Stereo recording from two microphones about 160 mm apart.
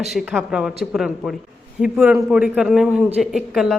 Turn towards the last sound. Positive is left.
turn(degrees=0)  # may be behind; listen again after turning